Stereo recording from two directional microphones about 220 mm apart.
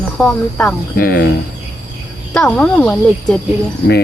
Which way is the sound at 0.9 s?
40° left (ahead or behind).